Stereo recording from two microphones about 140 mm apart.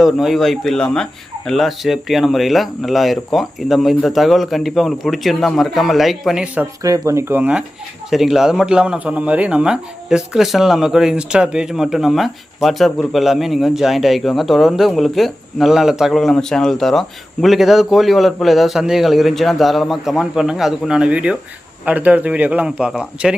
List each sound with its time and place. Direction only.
0.0 s speech: centre (ahead or behind)
6.8 s speech: 25° right (ahead or behind)
8.1 s a man's voice: centre (ahead or behind)